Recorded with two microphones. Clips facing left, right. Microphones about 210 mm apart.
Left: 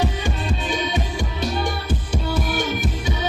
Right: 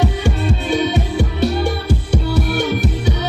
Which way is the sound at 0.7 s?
70° right (ahead or behind).